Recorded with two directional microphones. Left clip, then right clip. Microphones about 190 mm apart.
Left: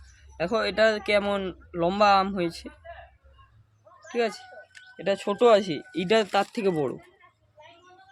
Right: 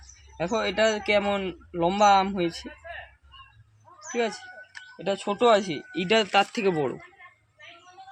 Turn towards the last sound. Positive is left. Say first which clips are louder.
# right 1 dB
turn(degrees=15)  # may be behind; listen again after turning